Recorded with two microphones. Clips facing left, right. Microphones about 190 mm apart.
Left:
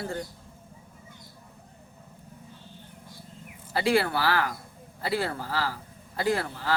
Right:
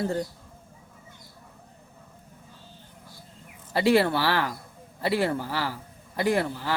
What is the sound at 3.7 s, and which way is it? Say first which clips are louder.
A man's voice: right 3 dB; 20° right (ahead or behind).